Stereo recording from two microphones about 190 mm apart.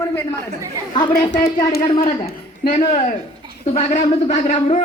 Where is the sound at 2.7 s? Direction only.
35° left (ahead or behind).